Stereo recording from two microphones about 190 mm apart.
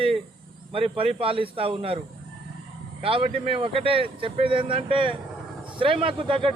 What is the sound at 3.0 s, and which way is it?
A man's voice, 30° right (ahead or behind).